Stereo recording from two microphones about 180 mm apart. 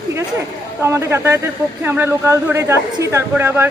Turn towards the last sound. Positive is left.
turn(degrees=-15)  # may be behind; listen again after turning